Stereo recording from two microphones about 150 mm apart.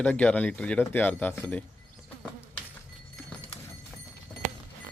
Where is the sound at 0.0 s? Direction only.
10° left (ahead or behind).